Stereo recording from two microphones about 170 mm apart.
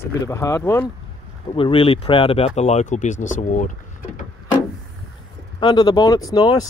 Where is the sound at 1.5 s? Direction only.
30° left (ahead or behind); by 3.7 s 50° left (ahead or behind).